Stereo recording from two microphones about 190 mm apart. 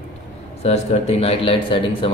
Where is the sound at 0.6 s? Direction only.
35° left (ahead or behind).